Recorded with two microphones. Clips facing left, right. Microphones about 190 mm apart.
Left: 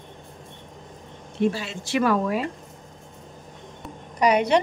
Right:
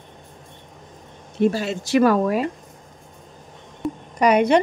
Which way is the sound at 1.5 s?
45° right (ahead or behind).